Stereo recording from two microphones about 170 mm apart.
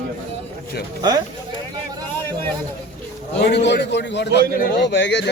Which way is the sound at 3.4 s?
85° left.